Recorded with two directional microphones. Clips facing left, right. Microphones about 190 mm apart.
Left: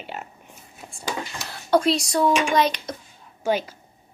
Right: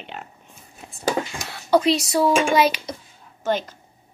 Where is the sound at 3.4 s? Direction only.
10° left (ahead or behind).